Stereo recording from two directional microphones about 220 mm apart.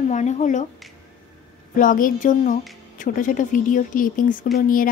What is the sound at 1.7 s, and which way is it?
Speech, 35° left (ahead or behind).